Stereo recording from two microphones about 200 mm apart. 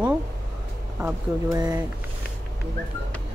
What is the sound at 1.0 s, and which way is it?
Speech, 15° right (ahead or behind).